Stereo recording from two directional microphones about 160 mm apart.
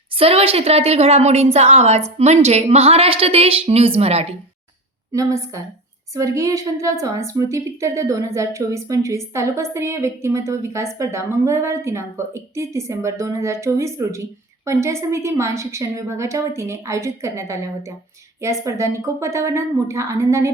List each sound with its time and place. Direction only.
0.2 s a woman's voice: 35° right (ahead or behind)
5.1 s a woman's voice: 20° right (ahead or behind)
18.6 s a woman's voice: 20° right (ahead or behind)